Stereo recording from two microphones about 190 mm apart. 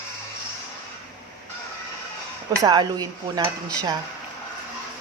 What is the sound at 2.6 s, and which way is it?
Speech, 20° right (ahead or behind).